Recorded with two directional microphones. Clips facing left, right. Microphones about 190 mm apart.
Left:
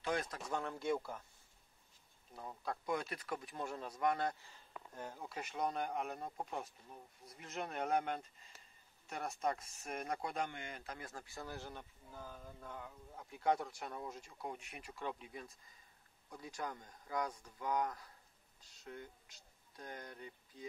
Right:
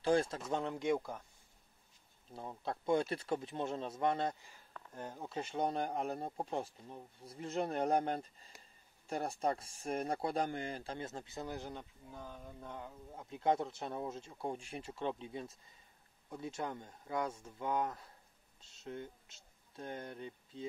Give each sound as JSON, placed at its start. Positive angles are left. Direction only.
{"t": 0.0, "sound": "a man's voice", "side_deg": -30}
{"t": 2.3, "sound": "a man's voice", "side_deg": -25}
{"t": 12.1, "sound": "speech", "side_deg": 5}
{"t": 12.5, "sound": "a man's voice", "side_deg": -20}